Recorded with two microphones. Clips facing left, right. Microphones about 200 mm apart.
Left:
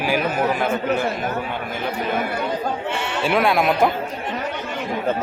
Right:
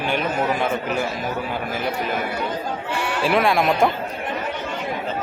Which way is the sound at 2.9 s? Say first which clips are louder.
Even; 25° left (ahead or behind).